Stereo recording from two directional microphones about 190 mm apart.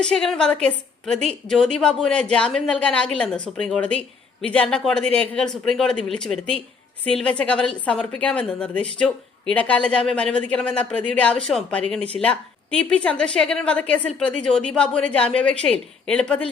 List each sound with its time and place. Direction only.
0.0 s a woman's voice: 5° left (ahead or behind)